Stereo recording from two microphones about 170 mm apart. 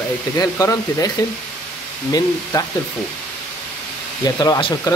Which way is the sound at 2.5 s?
25° left (ahead or behind).